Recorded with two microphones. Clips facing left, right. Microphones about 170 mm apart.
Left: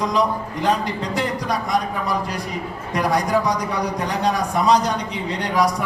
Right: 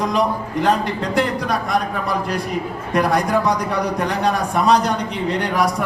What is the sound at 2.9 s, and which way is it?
A man's voice, 60° right (ahead or behind).